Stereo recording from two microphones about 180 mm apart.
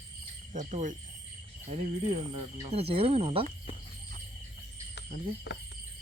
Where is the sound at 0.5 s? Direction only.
45° right (ahead or behind).